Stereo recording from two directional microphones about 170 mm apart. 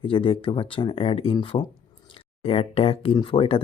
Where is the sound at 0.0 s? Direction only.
30° left (ahead or behind).